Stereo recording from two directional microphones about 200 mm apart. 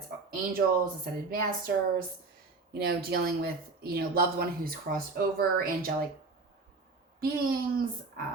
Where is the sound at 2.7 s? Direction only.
55° right (ahead or behind).